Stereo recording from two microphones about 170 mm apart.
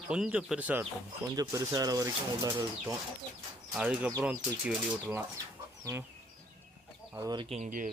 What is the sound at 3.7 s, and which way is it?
Speech, 5° right (ahead or behind).